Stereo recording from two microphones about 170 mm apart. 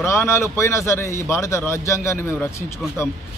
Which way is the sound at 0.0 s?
15° left (ahead or behind).